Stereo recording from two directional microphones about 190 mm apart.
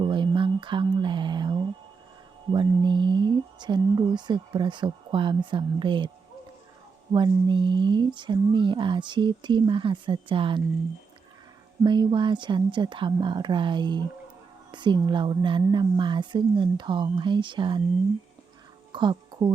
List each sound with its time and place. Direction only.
0.0 s a sound: 25° right (ahead or behind)
2.5 s speech: 25° right (ahead or behind)
7.1 s speech: 25° right (ahead or behind)
11.8 s speech: 25° right (ahead or behind)
18.9 s speech: 25° right (ahead or behind)